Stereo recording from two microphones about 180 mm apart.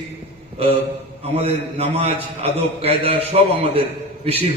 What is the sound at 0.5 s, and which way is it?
A man's voice, 35° right (ahead or behind).